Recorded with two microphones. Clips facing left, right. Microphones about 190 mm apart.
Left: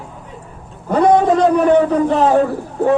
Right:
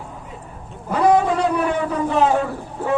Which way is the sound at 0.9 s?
40° left (ahead or behind).